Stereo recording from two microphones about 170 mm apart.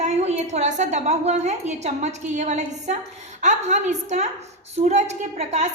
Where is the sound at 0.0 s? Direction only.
40° right (ahead or behind).